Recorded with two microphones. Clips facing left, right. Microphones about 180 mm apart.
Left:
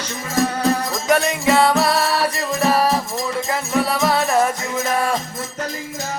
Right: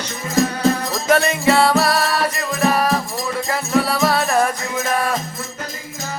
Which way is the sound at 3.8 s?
20° left (ahead or behind).